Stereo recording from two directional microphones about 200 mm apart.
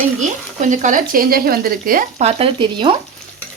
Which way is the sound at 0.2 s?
40° right (ahead or behind).